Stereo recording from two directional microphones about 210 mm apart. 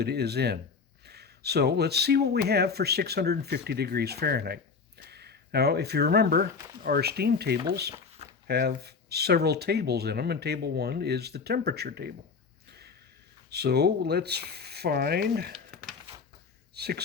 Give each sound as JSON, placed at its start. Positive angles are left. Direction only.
{"t": 0.0, "sound": "speech", "side_deg": -50}
{"t": 12.6, "sound": "a sound", "side_deg": -50}
{"t": 13.5, "sound": "speech", "side_deg": -50}